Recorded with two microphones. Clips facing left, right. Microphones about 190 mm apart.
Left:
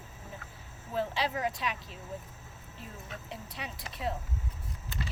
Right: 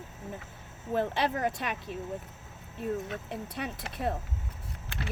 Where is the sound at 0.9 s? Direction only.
55° right (ahead or behind).